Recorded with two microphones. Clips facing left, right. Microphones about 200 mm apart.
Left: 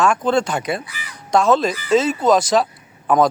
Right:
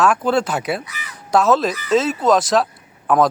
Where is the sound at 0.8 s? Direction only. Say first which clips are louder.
Even; 30° left (ahead or behind).